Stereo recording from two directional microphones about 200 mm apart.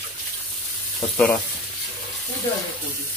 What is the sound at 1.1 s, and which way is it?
Speech, 5° left (ahead or behind).